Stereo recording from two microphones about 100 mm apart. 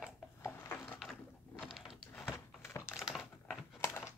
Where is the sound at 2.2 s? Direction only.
25° left (ahead or behind).